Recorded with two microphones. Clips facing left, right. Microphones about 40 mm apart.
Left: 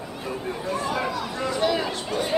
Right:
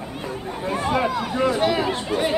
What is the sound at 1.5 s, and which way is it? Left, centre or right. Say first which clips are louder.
Chatter: even; centre.